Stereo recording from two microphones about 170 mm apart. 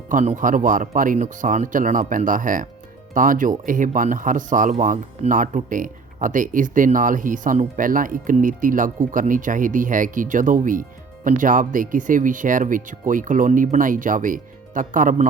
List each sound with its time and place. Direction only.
0.1 s speech: 50° right (ahead or behind)